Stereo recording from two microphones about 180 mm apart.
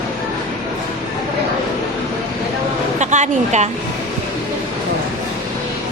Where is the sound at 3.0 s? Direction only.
40° right (ahead or behind).